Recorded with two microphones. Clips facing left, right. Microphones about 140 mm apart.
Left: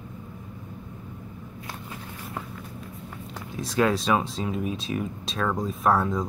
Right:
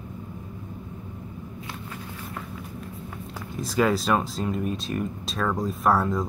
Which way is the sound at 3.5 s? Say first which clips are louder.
Right 1 dB; centre (ahead or behind).